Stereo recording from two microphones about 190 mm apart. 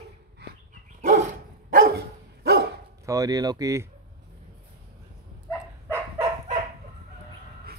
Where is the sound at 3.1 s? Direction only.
20° right (ahead or behind).